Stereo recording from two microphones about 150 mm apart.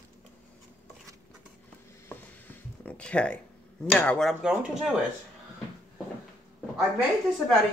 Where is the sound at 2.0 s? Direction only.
10° left (ahead or behind).